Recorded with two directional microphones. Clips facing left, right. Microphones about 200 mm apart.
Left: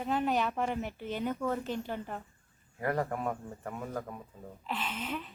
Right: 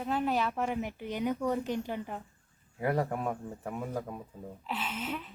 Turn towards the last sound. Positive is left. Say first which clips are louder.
# right 1 dB
turn(degrees=-5)  # may be behind; listen again after turning